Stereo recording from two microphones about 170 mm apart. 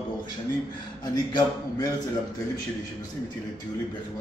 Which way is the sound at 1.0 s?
25° left (ahead or behind).